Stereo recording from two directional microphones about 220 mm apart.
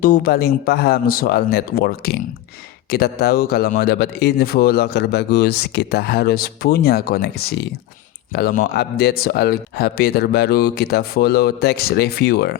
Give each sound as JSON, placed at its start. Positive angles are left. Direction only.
{"t": 0.0, "sound": "speech", "side_deg": 40}